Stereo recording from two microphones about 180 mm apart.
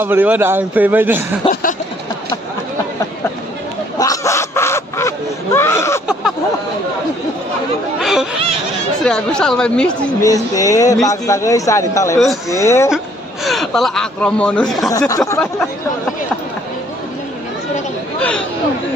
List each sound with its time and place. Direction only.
0.0 s a man's voice: 10° right (ahead or behind)
1.5 s a sound: 50° left (ahead or behind)
4.0 s a sound: 15° left (ahead or behind)
8.0 s speech: centre (ahead or behind)
10.2 s speech: 20° left (ahead or behind)
12.9 s speech: centre (ahead or behind)
14.9 s speech: 20° left (ahead or behind)